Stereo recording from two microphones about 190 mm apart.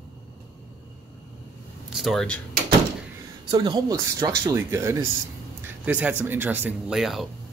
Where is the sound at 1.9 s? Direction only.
Centre (ahead or behind).